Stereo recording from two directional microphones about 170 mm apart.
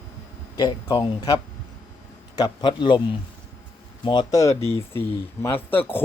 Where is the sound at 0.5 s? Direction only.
25° left (ahead or behind).